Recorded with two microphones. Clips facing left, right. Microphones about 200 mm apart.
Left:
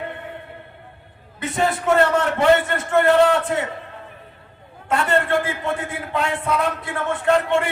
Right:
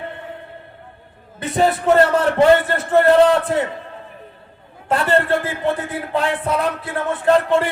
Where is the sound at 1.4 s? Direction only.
35° right (ahead or behind).